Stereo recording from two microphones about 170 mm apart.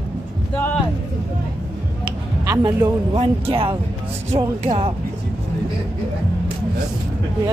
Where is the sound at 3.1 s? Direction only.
35° right (ahead or behind).